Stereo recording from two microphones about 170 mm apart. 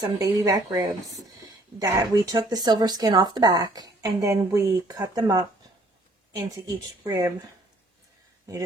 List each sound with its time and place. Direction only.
0.0 s speech: 20° right (ahead or behind)
6.5 s speech: 20° right (ahead or behind)